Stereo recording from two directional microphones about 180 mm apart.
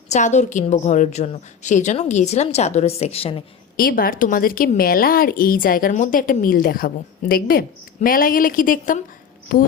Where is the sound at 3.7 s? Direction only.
55° left (ahead or behind).